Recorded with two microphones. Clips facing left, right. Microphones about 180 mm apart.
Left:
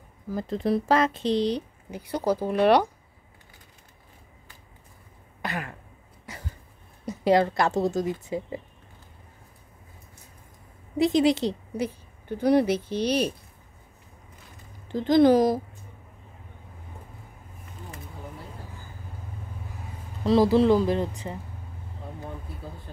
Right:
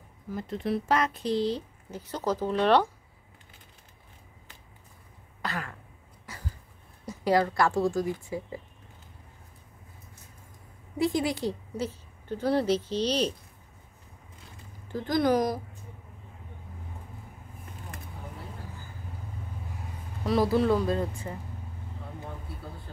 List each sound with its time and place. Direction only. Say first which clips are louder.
0.3 s speech: left 5 dB; 35° left (ahead or behind); by 2.9 s 15° left (ahead or behind)
5.4 s throat clearing: left 2 dB; 20° left (ahead or behind)
6.3 s a sound: left 3 dB; 20° left (ahead or behind)
7.1 s speech: left 4 dB; 20° left (ahead or behind)
11.0 s a woman's voice: left 6 dB; 20° left (ahead or behind)
14.9 s speech: left 7 dB; 20° left (ahead or behind)
20.2 s speech: left 5 dB; 30° left (ahead or behind)